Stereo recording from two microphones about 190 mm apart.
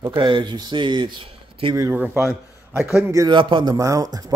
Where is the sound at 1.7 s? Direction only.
15° right (ahead or behind).